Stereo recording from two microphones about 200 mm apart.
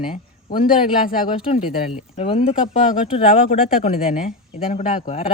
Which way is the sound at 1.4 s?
30° left (ahead or behind).